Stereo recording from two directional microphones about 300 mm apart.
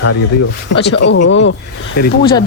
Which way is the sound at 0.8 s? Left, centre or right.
Left.